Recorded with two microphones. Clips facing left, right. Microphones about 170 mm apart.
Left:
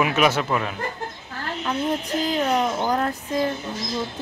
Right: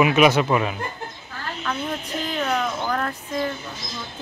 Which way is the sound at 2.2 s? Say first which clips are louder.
Left 2 dB; 35° left (ahead or behind).